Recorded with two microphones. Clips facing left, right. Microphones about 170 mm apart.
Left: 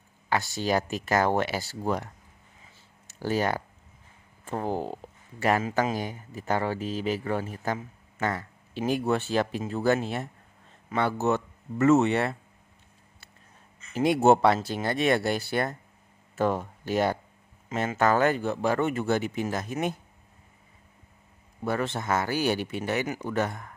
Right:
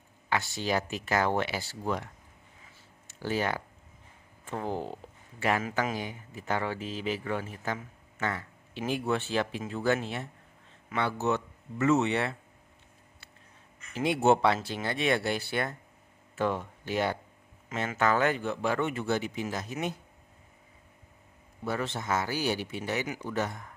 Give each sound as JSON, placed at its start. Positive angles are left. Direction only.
{"t": 0.3, "sound": "speech", "side_deg": 40}
{"t": 3.1, "sound": "a man's voice", "side_deg": 40}
{"t": 13.9, "sound": "speech", "side_deg": 45}
{"t": 21.6, "sound": "speech", "side_deg": 55}